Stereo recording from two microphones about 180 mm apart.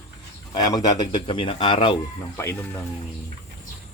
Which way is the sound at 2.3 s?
15° left (ahead or behind).